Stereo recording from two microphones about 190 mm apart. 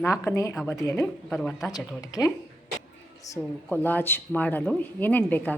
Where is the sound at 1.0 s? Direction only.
5° left (ahead or behind).